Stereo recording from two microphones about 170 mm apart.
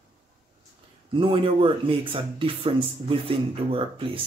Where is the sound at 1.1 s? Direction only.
30° right (ahead or behind).